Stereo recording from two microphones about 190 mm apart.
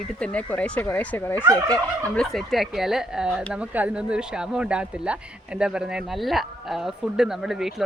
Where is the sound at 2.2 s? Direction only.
Centre (ahead or behind).